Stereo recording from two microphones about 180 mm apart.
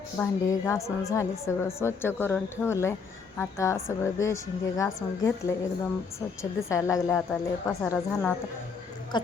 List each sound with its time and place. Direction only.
0.2 s a woman's voice: 15° left (ahead or behind)
9.1 s a woman's voice: 25° left (ahead or behind)